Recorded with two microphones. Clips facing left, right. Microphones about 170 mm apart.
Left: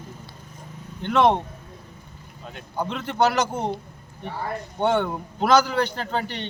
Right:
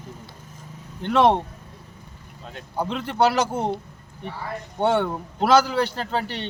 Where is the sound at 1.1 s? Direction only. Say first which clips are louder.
Right 1 dB; 5° right (ahead or behind).